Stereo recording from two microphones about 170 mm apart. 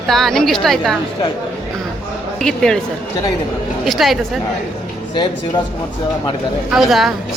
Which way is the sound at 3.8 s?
Centre (ahead or behind).